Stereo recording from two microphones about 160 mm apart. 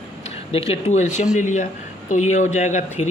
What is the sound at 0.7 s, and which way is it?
Speech, 45° left (ahead or behind).